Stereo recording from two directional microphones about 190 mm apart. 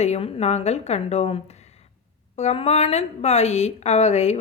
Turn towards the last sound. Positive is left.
turn(degrees=35)  # may be behind; listen again after turning